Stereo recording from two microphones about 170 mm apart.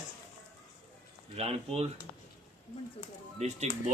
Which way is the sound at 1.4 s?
35° right (ahead or behind).